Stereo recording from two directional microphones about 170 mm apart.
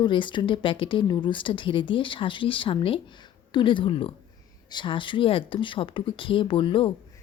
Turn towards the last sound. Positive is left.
turn(degrees=30)  # may be behind; listen again after turning